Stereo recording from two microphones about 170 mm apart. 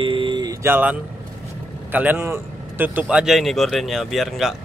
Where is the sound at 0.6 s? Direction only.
10° right (ahead or behind).